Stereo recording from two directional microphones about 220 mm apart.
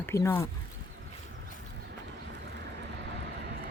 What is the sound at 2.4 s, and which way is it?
Vehicle, 50° right (ahead or behind).